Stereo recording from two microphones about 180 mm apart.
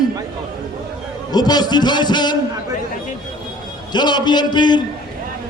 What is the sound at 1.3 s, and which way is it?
A man's voice, 20° left (ahead or behind).